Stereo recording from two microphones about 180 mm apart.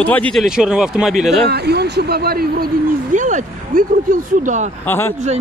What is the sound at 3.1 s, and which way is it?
Speech, 45° right (ahead or behind).